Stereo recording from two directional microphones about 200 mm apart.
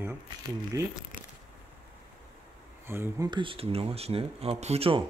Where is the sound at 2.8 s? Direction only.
15° right (ahead or behind); by 5.0 s 30° right (ahead or behind).